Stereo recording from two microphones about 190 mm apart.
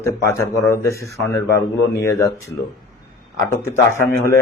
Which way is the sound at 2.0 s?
15° left (ahead or behind).